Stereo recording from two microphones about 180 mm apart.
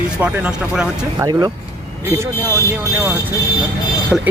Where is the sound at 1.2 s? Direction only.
20° right (ahead or behind).